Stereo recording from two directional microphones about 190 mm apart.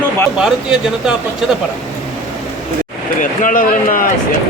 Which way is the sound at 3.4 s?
45° left (ahead or behind).